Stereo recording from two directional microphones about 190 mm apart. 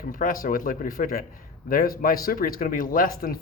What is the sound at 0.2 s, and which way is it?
Speech, 50° left (ahead or behind).